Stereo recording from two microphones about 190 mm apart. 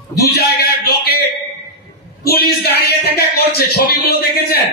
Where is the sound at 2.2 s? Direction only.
55° left (ahead or behind).